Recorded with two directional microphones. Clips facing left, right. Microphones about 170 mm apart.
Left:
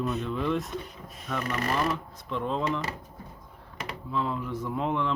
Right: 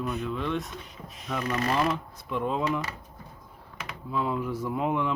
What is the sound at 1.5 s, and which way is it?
A man's voice, 15° right (ahead or behind).